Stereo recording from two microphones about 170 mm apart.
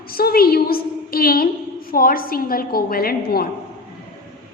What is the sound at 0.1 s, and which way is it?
A woman's voice, 60° left (ahead or behind).